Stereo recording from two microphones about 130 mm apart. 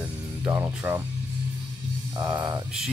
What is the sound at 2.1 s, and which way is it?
Speech, 35° right (ahead or behind).